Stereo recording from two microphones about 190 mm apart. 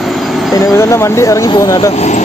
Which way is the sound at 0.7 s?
15° left (ahead or behind).